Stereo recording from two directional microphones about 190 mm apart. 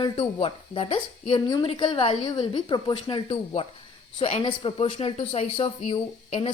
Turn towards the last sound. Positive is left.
turn(degrees=30)  # may be behind; listen again after turning